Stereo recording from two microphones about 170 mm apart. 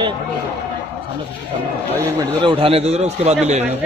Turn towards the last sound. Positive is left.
turn(degrees=-40)  # may be behind; listen again after turning